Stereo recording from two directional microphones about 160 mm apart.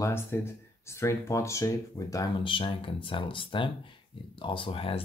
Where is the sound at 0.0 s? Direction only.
15° left (ahead or behind).